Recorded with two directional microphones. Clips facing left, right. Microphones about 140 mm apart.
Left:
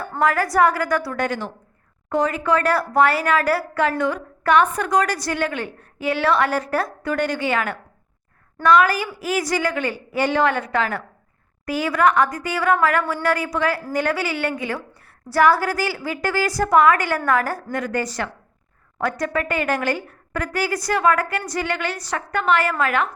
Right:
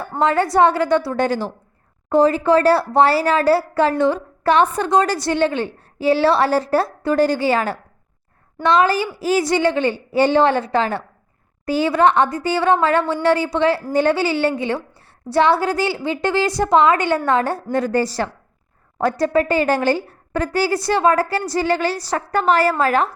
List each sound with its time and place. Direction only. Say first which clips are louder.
0.0 s a woman's voice: right 3 dB; 25° right (ahead or behind)